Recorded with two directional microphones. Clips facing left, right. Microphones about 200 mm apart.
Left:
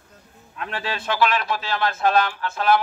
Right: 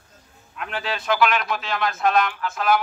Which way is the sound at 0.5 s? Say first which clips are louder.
Even; 30° left (ahead or behind).